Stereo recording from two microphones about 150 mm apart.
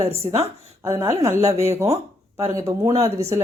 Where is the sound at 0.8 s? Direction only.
15° right (ahead or behind).